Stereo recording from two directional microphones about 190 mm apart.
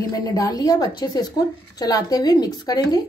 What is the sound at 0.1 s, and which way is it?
A woman's voice, 20° left (ahead or behind).